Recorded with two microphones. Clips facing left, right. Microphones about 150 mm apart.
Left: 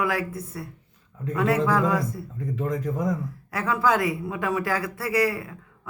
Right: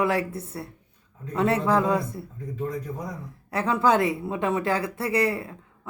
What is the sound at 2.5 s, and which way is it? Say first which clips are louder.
Speech: left 3 dB; 90° left.